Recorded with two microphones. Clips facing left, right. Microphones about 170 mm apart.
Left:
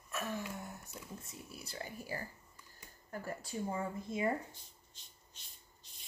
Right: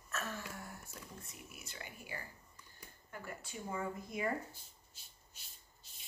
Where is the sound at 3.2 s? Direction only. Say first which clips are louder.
Left 6 dB; 35° left (ahead or behind).